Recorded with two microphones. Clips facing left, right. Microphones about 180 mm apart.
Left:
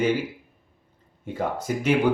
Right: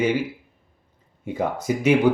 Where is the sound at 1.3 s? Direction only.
10° right (ahead or behind).